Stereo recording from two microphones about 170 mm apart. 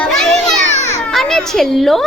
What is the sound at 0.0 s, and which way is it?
Children playing, 5° left (ahead or behind).